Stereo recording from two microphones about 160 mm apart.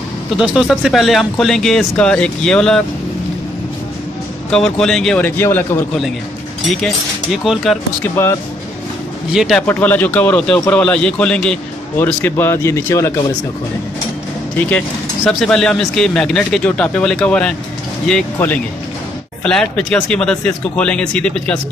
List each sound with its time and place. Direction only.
0.4 s speech: 5° right (ahead or behind)
4.5 s speech: 5° left (ahead or behind)
7.4 s speech: centre (ahead or behind)
8.0 s speech: 15° left (ahead or behind)
9.3 s speech: centre (ahead or behind)
9.7 s speech: 10° left (ahead or behind)
15.2 s speech: 5° left (ahead or behind)